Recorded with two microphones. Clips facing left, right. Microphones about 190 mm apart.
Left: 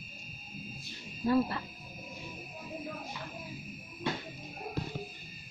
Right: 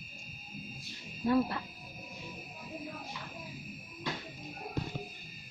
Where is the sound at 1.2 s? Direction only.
Centre (ahead or behind).